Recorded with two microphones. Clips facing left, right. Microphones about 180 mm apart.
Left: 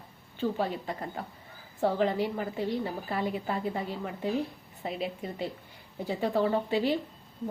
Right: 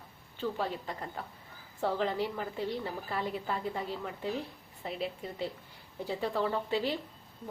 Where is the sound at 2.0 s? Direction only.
10° left (ahead or behind).